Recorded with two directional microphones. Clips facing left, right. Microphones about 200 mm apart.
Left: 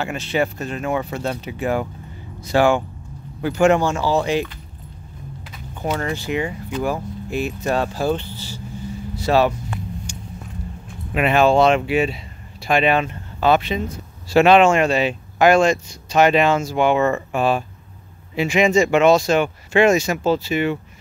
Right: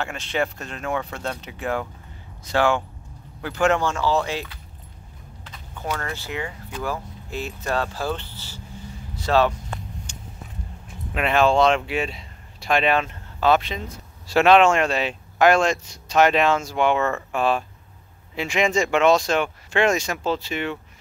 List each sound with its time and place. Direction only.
0.0 s speech: 5° left (ahead or behind)
5.8 s speech: 15° left (ahead or behind)
10.1 s vehicle: 10° left (ahead or behind)
11.1 s speech: 5° left (ahead or behind)